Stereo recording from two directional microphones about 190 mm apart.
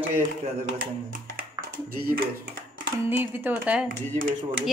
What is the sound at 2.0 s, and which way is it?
Speech, 50° right (ahead or behind).